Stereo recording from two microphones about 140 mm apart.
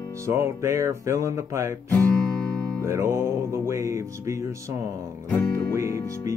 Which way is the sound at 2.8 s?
20° right (ahead or behind).